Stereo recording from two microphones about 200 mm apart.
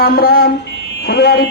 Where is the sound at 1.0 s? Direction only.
55° left (ahead or behind).